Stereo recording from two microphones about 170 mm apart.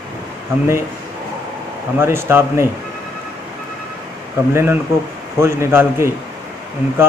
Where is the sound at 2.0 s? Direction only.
15° right (ahead or behind).